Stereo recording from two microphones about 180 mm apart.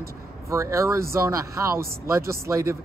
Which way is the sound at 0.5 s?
15° right (ahead or behind).